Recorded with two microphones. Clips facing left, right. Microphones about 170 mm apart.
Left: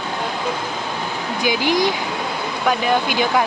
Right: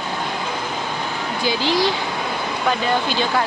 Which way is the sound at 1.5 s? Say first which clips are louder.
Left 1 dB; 15° left (ahead or behind).